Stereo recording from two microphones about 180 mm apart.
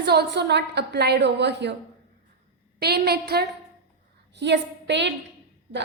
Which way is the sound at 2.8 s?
65° right (ahead or behind).